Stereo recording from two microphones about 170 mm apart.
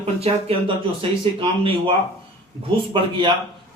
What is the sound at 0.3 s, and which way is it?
Speech, 35° right (ahead or behind).